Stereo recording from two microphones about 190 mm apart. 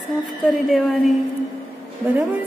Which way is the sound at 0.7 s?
Centre (ahead or behind).